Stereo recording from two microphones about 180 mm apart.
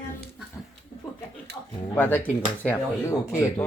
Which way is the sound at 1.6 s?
20° left (ahead or behind).